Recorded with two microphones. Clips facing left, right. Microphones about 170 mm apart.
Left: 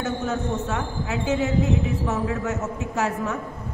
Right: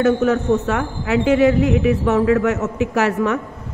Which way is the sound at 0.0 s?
70° right (ahead or behind).